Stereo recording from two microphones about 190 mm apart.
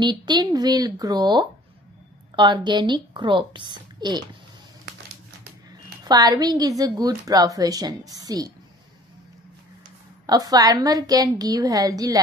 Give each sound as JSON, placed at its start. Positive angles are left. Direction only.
{"t": 0.0, "sound": "a woman's voice", "side_deg": -25}
{"t": 6.0, "sound": "a woman's voice", "side_deg": -20}
{"t": 10.2, "sound": "a woman's voice", "side_deg": -20}